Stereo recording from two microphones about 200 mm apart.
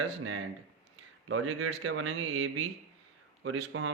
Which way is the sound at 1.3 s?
90° right.